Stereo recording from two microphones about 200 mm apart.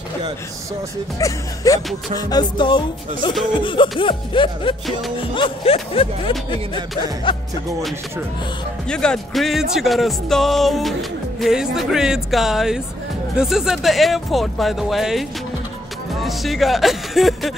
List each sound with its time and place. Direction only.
1.2 s speech: 15° left (ahead or behind)
2.1 s music: 20° left (ahead or behind)
8.8 s speech: 5° left (ahead or behind)